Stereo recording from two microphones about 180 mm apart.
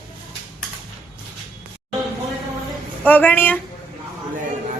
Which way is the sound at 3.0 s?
10° left (ahead or behind).